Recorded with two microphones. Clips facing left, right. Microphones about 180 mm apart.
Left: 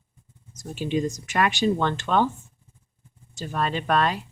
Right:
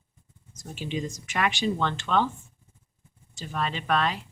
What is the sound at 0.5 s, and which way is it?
Speech, 40° left (ahead or behind).